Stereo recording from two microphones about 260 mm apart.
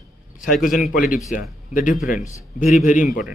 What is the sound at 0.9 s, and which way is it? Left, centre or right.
A man's voice, left.